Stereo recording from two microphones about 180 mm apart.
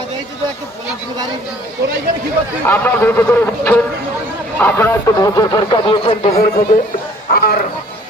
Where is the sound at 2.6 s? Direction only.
10° left (ahead or behind); by 6.3 s 25° left (ahead or behind).